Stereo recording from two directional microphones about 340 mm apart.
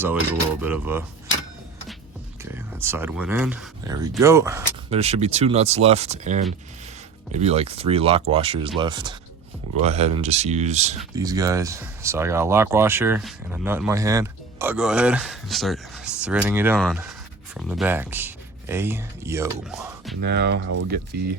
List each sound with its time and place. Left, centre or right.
0.6 s creak: centre
2.4 s speech: centre
20.2 s speech: right